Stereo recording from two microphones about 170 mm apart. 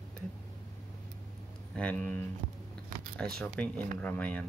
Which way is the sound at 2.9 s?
50° right (ahead or behind).